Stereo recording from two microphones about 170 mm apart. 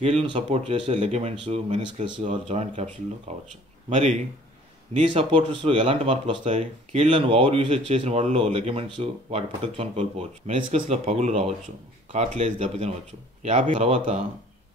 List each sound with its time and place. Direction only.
0.0 s speech: 35° right (ahead or behind)
5.3 s speech: 30° right (ahead or behind)
6.5 s speech: 45° right (ahead or behind)
7.2 s speech: 30° right (ahead or behind)